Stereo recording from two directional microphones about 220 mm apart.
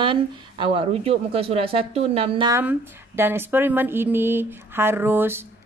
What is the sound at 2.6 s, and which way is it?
A woman's voice, 10° right (ahead or behind).